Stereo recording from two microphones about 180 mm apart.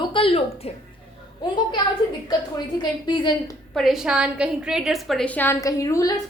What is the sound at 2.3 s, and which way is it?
A woman's voice, 25° left (ahead or behind).